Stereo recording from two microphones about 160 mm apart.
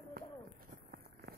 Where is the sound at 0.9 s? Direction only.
80° right.